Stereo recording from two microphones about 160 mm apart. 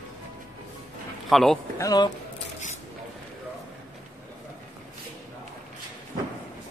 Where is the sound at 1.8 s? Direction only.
25° left (ahead or behind).